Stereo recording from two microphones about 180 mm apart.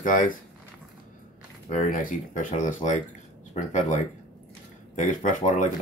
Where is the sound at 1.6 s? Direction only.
45° left (ahead or behind).